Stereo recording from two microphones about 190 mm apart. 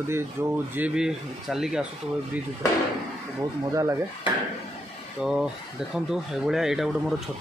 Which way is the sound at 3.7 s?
15° right (ahead or behind).